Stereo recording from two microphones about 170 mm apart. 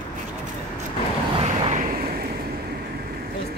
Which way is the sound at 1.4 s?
35° right (ahead or behind).